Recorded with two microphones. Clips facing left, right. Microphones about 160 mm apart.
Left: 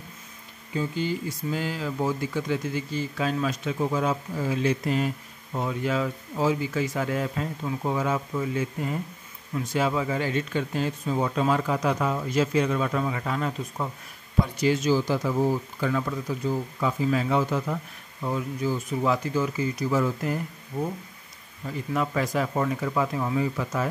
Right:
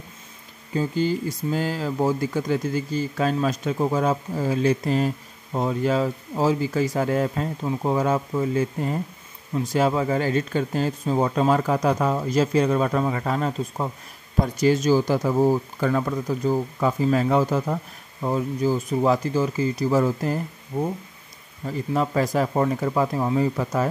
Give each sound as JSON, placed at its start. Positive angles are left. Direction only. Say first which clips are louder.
{"t": 0.7, "sound": "speech", "louder": "right 5 dB", "side_deg": -40}